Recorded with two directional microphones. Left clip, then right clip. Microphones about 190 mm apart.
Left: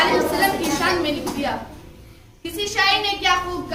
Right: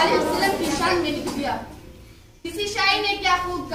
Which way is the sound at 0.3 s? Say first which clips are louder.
Left 2 dB; 5° left (ahead or behind).